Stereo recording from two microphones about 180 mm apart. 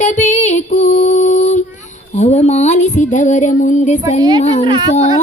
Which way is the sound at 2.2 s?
40° left (ahead or behind).